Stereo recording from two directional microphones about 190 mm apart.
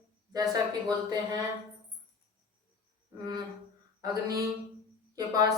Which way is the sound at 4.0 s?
20° right (ahead or behind).